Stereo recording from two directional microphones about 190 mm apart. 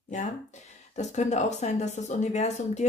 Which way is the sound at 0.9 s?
40° left (ahead or behind).